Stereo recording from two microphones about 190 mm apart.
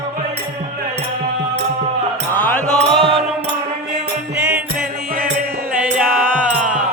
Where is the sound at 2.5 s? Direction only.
5° left (ahead or behind).